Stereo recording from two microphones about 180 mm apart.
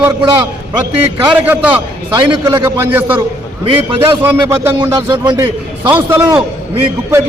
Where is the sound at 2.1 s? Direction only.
25° right (ahead or behind).